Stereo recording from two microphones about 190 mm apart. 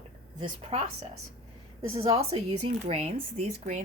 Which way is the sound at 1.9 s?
30° right (ahead or behind).